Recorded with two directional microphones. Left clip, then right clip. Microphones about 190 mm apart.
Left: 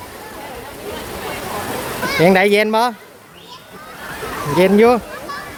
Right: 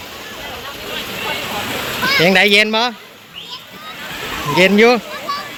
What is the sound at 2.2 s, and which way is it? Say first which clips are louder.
Speech: right 1 dB; 15° left (ahead or behind).